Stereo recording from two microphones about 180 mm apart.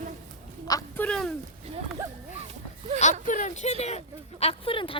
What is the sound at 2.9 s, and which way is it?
Speech, 35° right (ahead or behind).